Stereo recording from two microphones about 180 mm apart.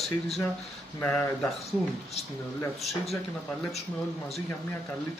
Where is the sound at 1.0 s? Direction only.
15° left (ahead or behind).